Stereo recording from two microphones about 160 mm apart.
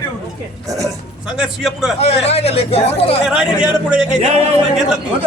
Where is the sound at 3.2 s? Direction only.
5° right (ahead or behind).